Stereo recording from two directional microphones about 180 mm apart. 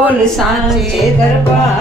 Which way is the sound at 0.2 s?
Centre (ahead or behind).